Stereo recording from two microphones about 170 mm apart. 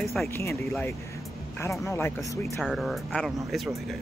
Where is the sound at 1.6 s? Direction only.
15° left (ahead or behind).